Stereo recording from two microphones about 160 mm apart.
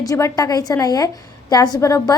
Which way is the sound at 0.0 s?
20° left (ahead or behind).